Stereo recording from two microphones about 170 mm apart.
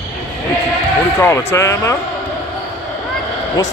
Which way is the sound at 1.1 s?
15° left (ahead or behind).